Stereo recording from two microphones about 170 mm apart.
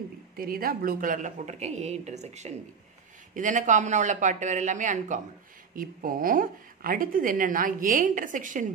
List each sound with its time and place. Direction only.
0.4 s a woman's voice: 60° right (ahead or behind)